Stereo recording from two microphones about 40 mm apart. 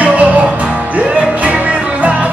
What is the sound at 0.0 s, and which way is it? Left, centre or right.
Music, right.